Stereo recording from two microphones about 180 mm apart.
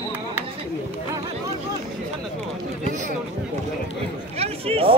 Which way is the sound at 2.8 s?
40° right (ahead or behind).